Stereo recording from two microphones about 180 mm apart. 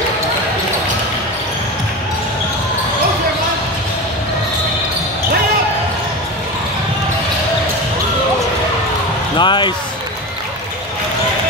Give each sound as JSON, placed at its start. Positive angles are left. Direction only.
{"t": 9.4, "sound": "speech", "side_deg": 25}